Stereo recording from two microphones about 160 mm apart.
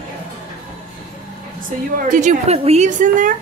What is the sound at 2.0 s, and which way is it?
A woman's voice, 45° right (ahead or behind).